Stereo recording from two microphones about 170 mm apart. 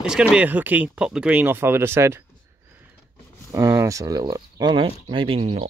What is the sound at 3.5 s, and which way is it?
Speech, 20° right (ahead or behind).